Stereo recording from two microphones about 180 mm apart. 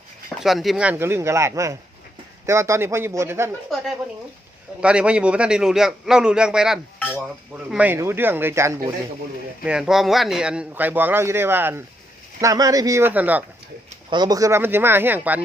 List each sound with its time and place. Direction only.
0.4 s speech: centre (ahead or behind)
4.8 s a man's voice: 5° right (ahead or behind)
7.0 s dishes: 10° left (ahead or behind)
7.7 s speech: 10° right (ahead or behind)
9.6 s speech: 5° right (ahead or behind)
14.1 s speech: 20° right (ahead or behind)